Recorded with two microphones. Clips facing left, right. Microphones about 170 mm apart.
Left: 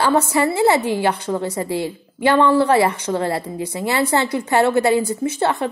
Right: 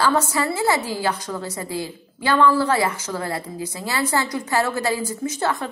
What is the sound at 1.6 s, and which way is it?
Speech, 70° left (ahead or behind).